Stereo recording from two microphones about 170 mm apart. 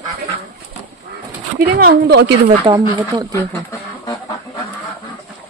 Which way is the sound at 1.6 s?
65° right (ahead or behind).